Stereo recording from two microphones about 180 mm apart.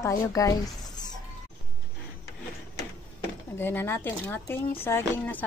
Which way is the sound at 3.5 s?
15° left (ahead or behind).